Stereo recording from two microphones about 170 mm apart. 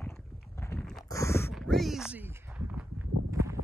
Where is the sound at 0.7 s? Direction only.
15° left (ahead or behind).